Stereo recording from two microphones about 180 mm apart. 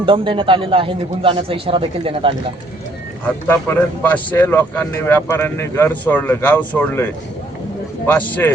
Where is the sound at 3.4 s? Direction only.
10° left (ahead or behind).